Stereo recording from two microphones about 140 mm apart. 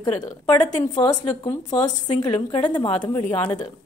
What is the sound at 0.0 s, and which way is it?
Speech, 30° left (ahead or behind).